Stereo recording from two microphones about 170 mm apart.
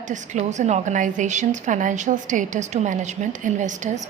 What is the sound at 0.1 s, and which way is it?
A woman's voice, 45° right (ahead or behind).